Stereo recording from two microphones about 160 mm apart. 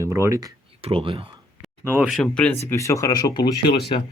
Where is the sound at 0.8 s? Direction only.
35° right (ahead or behind).